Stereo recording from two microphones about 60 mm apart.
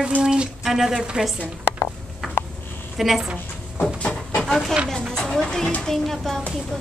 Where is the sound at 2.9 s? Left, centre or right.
Centre.